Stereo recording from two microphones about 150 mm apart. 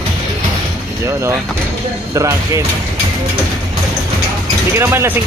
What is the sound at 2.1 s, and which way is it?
Speech, 20° right (ahead or behind).